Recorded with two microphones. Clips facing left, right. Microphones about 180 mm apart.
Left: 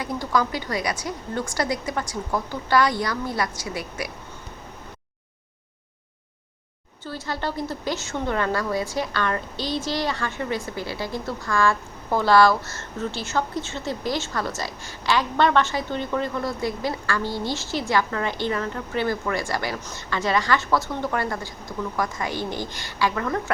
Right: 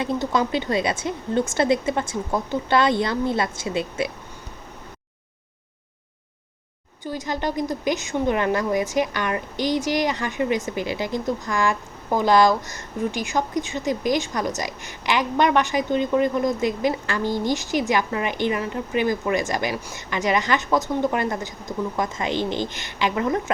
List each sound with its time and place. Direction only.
0.0 s a woman's voice: 25° right (ahead or behind)
7.0 s a woman's voice: 15° right (ahead or behind)